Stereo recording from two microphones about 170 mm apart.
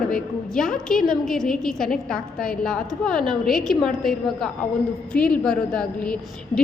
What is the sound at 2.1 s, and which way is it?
Speech, 55° left (ahead or behind).